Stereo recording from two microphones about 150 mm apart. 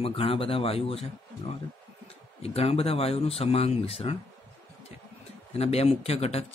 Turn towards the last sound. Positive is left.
turn(degrees=45)  # may be behind; listen again after turning